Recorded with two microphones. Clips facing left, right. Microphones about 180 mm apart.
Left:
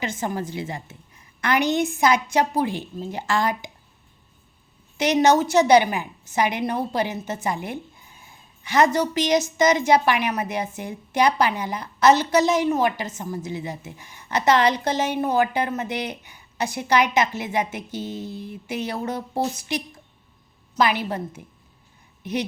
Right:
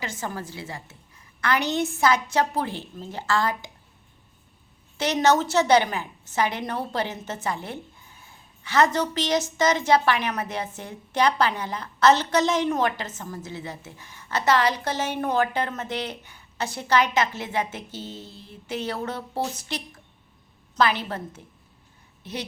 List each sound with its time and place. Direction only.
0.0 s a woman's voice: 20° left (ahead or behind)
4.9 s a woman's voice: 15° left (ahead or behind)